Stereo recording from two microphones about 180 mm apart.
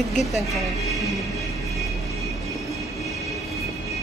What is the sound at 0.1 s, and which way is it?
Speech, centre (ahead or behind).